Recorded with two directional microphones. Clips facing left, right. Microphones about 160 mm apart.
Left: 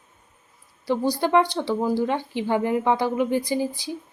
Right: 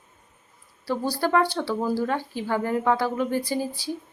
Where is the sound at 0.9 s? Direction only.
15° left (ahead or behind).